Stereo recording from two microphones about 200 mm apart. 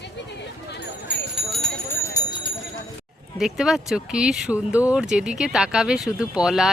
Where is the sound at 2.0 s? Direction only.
20° left (ahead or behind).